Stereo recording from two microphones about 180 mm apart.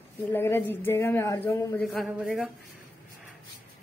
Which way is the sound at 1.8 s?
Centre (ahead or behind).